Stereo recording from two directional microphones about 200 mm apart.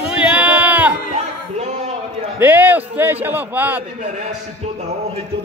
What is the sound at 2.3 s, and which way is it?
A man's voice, 10° right (ahead or behind).